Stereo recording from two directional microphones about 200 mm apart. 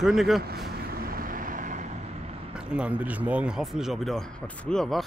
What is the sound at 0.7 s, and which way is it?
Vehicle, 50° right (ahead or behind).